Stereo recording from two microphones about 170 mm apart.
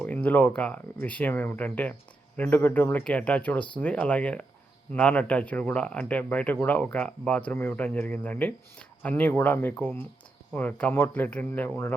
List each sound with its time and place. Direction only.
0.0 s speech: 10° left (ahead or behind)